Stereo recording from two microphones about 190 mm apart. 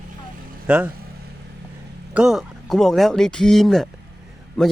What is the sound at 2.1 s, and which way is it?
Speech, 5° right (ahead or behind).